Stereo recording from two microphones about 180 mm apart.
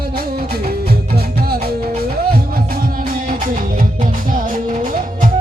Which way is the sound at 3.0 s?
50° right (ahead or behind).